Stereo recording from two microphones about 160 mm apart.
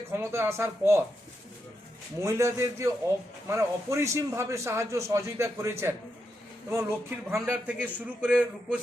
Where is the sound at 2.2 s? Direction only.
20° right (ahead or behind).